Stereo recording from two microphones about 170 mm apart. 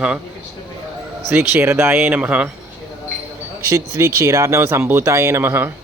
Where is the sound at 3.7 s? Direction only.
15° right (ahead or behind).